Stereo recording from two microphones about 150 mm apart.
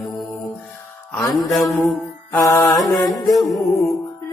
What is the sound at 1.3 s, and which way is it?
Music, centre (ahead or behind).